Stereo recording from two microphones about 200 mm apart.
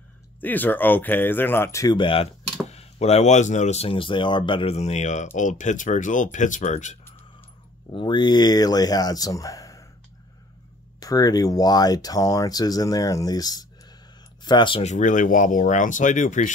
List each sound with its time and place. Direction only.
0.4 s speech: 10° left (ahead or behind); by 7.0 s 35° left (ahead or behind)
7.9 s speech: 25° left (ahead or behind)
11.0 s speech: 20° left (ahead or behind); by 16.5 s 40° left (ahead or behind)